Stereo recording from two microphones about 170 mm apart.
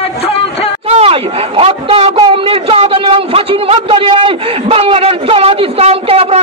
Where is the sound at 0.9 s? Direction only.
35° right (ahead or behind).